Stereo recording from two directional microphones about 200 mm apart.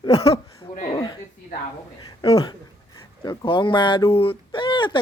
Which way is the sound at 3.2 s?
20° left (ahead or behind).